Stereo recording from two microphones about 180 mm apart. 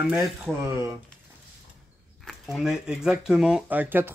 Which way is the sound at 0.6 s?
15° right (ahead or behind).